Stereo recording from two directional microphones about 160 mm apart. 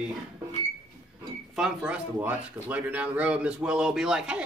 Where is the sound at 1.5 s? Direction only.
5° right (ahead or behind).